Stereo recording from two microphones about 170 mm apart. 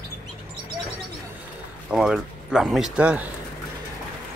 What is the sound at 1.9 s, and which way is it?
Speech, centre (ahead or behind).